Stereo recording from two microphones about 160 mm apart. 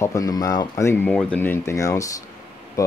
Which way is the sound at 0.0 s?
20° left (ahead or behind).